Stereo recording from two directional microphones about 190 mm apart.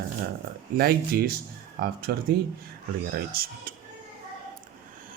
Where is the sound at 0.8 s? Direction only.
55° right (ahead or behind).